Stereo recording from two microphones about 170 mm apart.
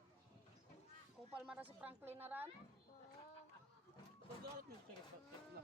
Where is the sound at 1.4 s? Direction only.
5° right (ahead or behind).